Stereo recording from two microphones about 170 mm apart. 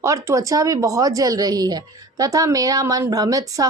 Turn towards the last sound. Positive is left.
turn(degrees=-20)  # may be behind; listen again after turning